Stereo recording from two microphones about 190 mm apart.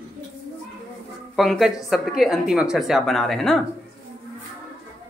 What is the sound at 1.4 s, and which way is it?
Speech, centre (ahead or behind).